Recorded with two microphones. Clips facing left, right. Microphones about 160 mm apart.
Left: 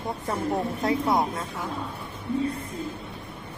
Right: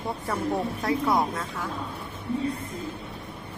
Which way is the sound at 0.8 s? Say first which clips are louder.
Left 1 dB; 20° left (ahead or behind).